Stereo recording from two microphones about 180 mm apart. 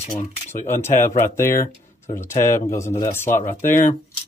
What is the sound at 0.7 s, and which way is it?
Speech, 15° left (ahead or behind).